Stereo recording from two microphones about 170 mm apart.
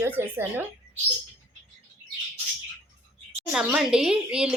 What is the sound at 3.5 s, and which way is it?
A woman's voice, 5° right (ahead or behind).